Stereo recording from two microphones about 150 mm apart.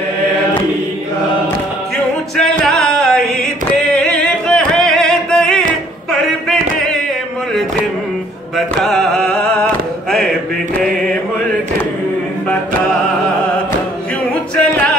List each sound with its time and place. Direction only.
2.3 s a sound: 5° left (ahead or behind)
3.8 s music: 5° left (ahead or behind)
8.5 s music: centre (ahead or behind)
14.5 s music: 5° left (ahead or behind)